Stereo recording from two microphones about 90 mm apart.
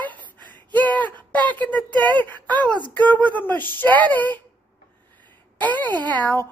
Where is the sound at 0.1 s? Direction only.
20° left (ahead or behind).